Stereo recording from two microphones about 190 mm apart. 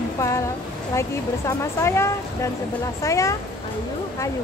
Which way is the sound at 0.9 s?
15° left (ahead or behind).